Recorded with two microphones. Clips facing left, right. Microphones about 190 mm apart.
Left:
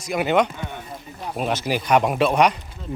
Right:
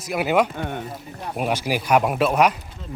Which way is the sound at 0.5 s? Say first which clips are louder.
Right 5 dB; 55° right (ahead or behind).